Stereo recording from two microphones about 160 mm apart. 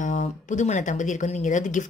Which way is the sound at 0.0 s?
50° left (ahead or behind).